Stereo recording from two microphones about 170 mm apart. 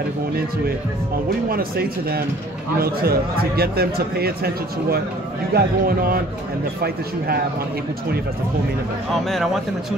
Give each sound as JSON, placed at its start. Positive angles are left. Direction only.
{"t": 1.5, "sound": "speech", "side_deg": -60}
{"t": 5.5, "sound": "speech", "side_deg": -60}
{"t": 9.1, "sound": "speech", "side_deg": 0}